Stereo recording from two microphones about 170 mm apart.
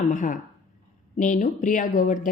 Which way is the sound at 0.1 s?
50° left (ahead or behind).